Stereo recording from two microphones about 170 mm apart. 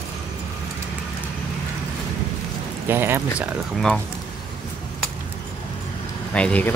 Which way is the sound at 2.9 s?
15° right (ahead or behind).